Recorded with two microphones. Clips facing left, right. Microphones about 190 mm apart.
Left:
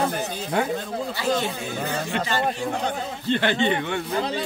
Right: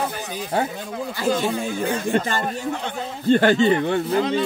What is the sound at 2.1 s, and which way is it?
Speech, 45° right (ahead or behind).